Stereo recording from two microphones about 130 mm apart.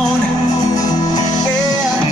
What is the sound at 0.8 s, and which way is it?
Music, 30° left (ahead or behind).